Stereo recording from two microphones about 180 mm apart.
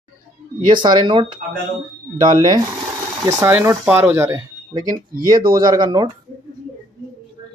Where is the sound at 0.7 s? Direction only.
25° right (ahead or behind).